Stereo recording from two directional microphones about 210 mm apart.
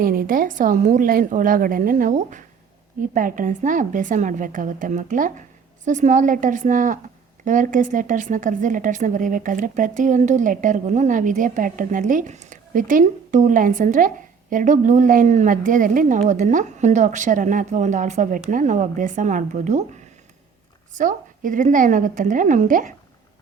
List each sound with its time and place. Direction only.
0.0 s speech: 40° right (ahead or behind)
20.9 s speech: 35° right (ahead or behind)